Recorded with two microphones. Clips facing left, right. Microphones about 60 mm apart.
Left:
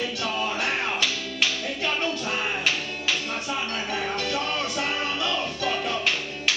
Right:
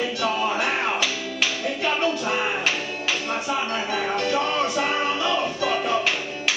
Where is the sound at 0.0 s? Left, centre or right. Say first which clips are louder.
Right 4 dB; centre.